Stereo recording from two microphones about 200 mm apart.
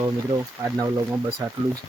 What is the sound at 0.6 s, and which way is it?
Speech, 15° right (ahead or behind).